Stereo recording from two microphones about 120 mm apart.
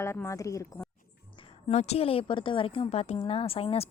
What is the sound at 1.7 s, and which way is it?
A woman's voice, 65° left (ahead or behind).